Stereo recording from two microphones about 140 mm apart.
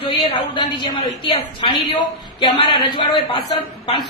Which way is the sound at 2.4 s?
35° left (ahead or behind).